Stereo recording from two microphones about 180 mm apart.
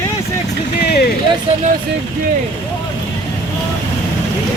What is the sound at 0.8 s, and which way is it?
Vehicle, 60° left (ahead or behind).